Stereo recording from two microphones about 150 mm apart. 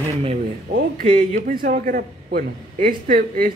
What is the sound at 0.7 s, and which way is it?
A man's voice, 70° right (ahead or behind).